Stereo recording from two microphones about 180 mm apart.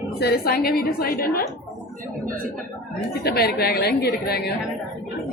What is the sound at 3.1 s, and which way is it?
A woman's voice, 60° left (ahead or behind).